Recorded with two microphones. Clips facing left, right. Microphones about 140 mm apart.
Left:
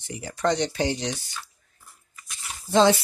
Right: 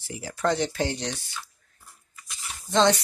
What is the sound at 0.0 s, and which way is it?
Speech, 5° right (ahead or behind).